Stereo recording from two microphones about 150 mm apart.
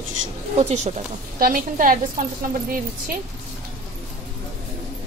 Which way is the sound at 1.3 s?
70° right (ahead or behind).